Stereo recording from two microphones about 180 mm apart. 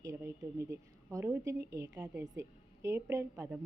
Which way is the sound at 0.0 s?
15° right (ahead or behind).